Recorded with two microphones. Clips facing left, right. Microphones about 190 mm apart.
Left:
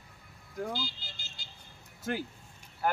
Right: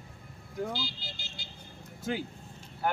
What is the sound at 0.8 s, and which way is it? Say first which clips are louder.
Speech: right 1 dB; 45° left (ahead or behind).